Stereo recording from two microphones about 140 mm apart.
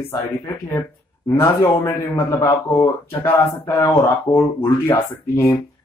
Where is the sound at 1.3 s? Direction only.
20° left (ahead or behind).